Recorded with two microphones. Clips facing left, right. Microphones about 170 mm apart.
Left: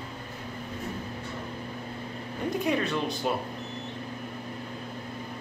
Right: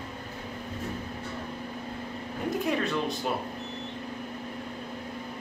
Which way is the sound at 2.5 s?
Centre (ahead or behind).